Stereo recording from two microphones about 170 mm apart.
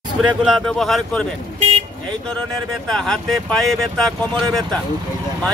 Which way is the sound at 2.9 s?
5° left (ahead or behind).